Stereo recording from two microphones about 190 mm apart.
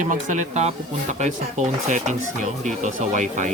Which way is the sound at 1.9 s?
40° right (ahead or behind).